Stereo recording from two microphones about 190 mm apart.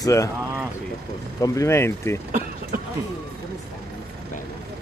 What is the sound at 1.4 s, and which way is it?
Speech, 15° left (ahead or behind).